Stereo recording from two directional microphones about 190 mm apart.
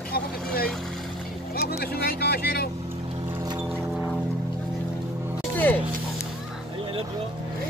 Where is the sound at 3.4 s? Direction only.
20° right (ahead or behind).